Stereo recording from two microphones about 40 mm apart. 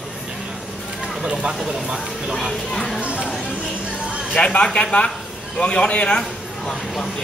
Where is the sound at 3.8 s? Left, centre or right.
Right.